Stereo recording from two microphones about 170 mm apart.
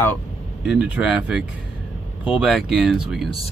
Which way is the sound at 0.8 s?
10° right (ahead or behind).